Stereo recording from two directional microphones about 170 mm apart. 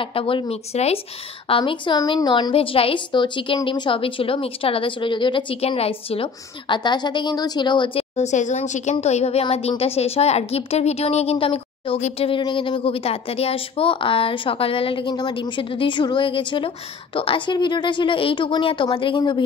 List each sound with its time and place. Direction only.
0.0 s a woman's voice: 30° left (ahead or behind)
8.2 s a woman's voice: 45° left (ahead or behind); by 19.4 s 30° left (ahead or behind)